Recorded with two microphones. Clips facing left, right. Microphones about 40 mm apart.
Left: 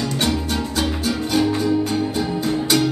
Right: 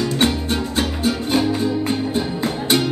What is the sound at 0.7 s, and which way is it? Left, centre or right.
Music, right.